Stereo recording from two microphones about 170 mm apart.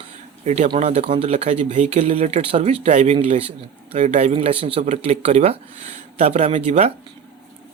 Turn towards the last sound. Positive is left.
turn(degrees=-40)  # may be behind; listen again after turning